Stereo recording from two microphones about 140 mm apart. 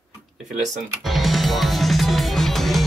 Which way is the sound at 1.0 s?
Centre (ahead or behind).